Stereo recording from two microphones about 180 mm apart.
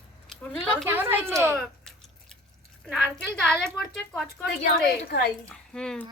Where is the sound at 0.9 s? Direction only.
10° right (ahead or behind).